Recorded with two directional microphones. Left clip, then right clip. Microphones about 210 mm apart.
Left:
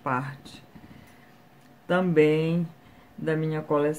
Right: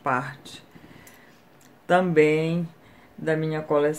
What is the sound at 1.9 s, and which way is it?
Speech, 5° right (ahead or behind).